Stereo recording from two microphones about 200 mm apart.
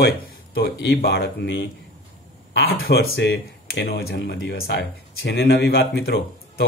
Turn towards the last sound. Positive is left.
turn(degrees=50)  # may be behind; listen again after turning